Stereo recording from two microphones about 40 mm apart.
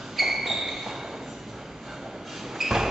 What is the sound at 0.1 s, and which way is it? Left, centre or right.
Ping, centre.